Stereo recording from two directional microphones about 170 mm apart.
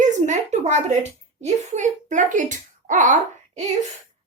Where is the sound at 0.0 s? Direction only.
45° right (ahead or behind).